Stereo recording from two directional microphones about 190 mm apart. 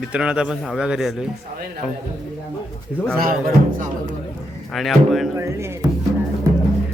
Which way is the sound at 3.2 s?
50° right (ahead or behind).